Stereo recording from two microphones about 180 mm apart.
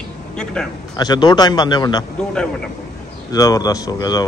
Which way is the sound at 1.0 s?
20° left (ahead or behind).